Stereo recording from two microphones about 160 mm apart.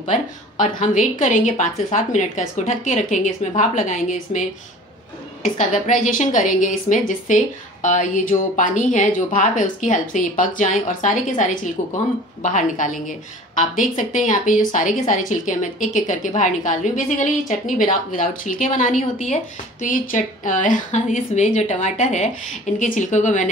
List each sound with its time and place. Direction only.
0.6 s a woman's voice: 50° left (ahead or behind)